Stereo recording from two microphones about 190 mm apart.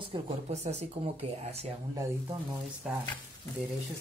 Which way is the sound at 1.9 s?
15° right (ahead or behind).